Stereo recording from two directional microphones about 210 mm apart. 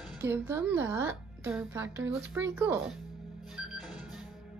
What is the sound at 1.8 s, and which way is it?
Speech, 65° right (ahead or behind).